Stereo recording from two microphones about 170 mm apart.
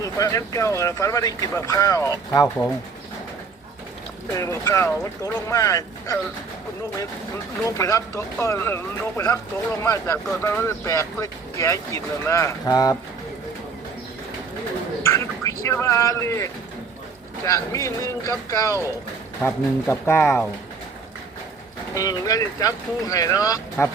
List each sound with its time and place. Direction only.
0.0 s speech: 20° left (ahead or behind)
4.4 s speech: 15° left (ahead or behind)
7.6 s speech: 20° left (ahead or behind)
15.0 s a sound: 15° left (ahead or behind)
17.4 s speech: 20° left (ahead or behind)
21.9 s speech: 20° left (ahead or behind)